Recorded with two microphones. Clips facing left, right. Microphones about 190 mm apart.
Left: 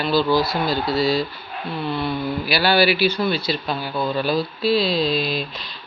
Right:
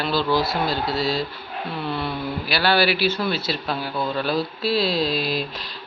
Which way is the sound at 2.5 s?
5° left (ahead or behind).